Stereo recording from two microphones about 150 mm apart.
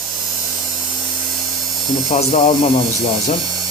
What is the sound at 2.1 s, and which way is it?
Speech, 45° left (ahead or behind).